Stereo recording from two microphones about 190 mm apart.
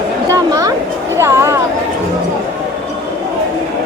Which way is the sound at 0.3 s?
20° right (ahead or behind).